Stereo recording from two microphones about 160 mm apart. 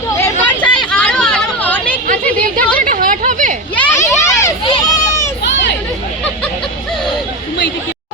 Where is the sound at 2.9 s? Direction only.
55° right (ahead or behind).